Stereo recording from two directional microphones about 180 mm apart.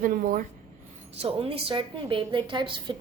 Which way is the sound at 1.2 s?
30° right (ahead or behind).